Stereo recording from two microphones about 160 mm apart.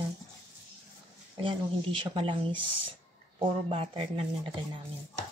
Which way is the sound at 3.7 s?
35° right (ahead or behind).